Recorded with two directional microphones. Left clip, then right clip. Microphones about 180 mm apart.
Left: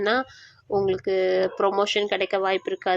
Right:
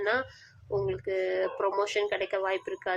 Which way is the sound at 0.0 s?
25° left (ahead or behind).